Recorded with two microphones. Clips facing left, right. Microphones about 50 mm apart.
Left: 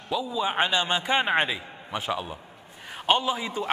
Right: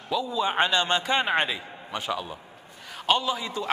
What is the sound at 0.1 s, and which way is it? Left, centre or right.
A man's voice, centre.